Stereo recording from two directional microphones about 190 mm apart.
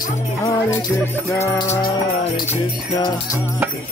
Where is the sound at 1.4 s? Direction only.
15° left (ahead or behind).